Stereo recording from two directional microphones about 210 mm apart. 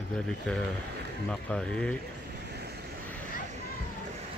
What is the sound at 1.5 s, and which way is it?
Speech, 5° left (ahead or behind).